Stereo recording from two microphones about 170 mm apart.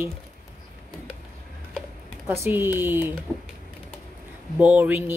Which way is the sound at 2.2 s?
15° right (ahead or behind).